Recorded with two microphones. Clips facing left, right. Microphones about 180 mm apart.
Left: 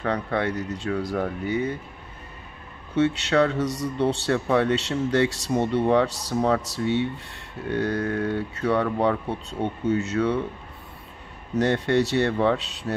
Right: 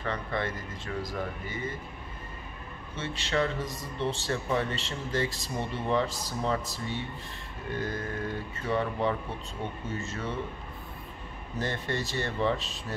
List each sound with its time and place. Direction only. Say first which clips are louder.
0.0 s a man's voice: left 7 dB; 65° left (ahead or behind)
3.0 s a man's voice: left 10 dB; 70° left (ahead or behind)
11.5 s a man's voice: left 11 dB; 75° left (ahead or behind)